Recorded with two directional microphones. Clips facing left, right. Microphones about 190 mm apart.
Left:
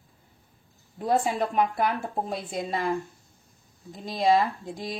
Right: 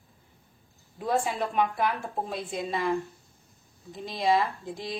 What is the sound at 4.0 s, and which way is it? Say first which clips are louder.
Speech: left 3 dB; 45° left (ahead or behind).